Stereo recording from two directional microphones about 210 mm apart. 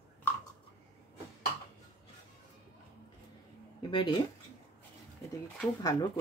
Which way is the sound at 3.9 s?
25° left (ahead or behind).